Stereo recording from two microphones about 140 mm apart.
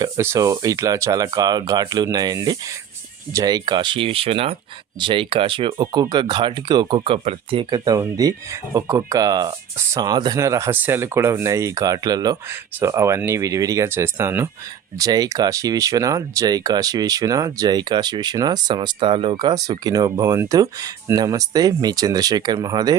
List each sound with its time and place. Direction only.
0.0 s speech: 20° right (ahead or behind)